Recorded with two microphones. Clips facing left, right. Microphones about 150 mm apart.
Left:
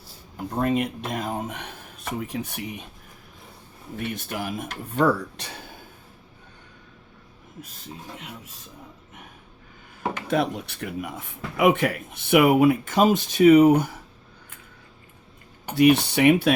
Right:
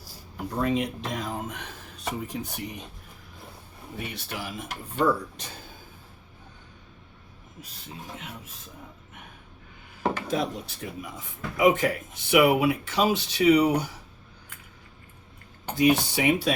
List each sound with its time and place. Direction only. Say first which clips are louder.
0.6 s speech: left 2 dB; 55° left (ahead or behind)
4.1 s speech: left 5 dB; 50° left (ahead or behind)
4.9 s speech: left 3 dB; 70° left (ahead or behind)
10.2 s speech: left 4 dB; 65° left (ahead or behind)
15.7 s speech: left 4 dB; 65° left (ahead or behind)